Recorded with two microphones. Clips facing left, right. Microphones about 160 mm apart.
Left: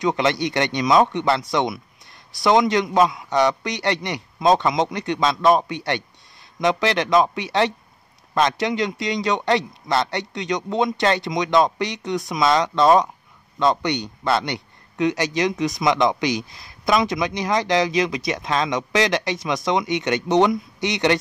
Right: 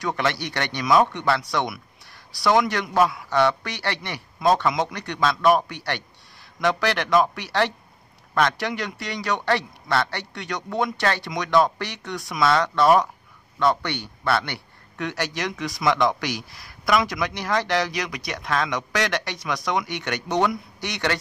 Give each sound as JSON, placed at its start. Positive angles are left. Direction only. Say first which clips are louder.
{"t": 0.0, "sound": "a man's voice", "louder": "left 5 dB", "side_deg": 20}